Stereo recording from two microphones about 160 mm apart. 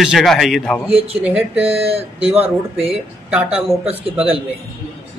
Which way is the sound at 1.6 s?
40° right (ahead or behind).